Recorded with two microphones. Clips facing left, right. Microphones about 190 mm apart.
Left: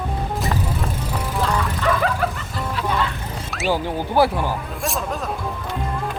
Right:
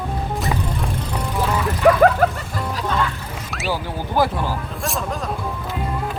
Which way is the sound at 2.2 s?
40° right (ahead or behind).